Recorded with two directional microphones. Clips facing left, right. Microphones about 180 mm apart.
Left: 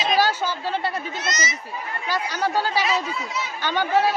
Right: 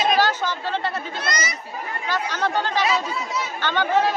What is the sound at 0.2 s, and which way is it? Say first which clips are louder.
Chatter: even; 10° left (ahead or behind).